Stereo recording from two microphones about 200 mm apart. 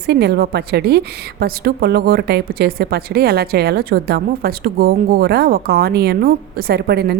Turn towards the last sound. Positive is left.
turn(degrees=-50)  # may be behind; listen again after turning